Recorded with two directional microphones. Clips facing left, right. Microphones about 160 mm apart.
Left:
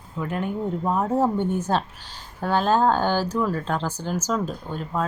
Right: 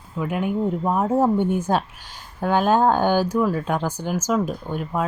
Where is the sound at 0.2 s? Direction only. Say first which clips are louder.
Right 4 dB; 10° right (ahead or behind).